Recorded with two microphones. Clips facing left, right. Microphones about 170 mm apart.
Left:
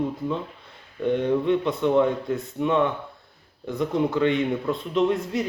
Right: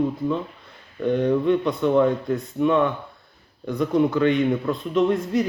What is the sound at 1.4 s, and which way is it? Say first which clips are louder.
A man's voice: right 2 dB; 20° left (ahead or behind).